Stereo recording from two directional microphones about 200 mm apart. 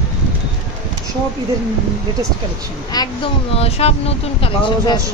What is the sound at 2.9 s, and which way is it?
Speech, 25° left (ahead or behind).